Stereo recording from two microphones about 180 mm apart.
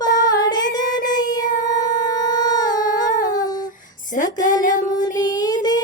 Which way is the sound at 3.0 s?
45° left (ahead or behind).